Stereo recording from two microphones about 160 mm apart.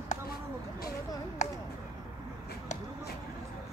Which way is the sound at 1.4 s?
50° left (ahead or behind).